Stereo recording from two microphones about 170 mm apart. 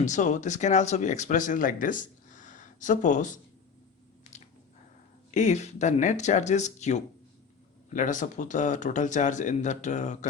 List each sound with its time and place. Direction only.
0.0 s speech: 45° left (ahead or behind)
4.3 s a sound: 40° left (ahead or behind)
5.3 s speech: 45° left (ahead or behind)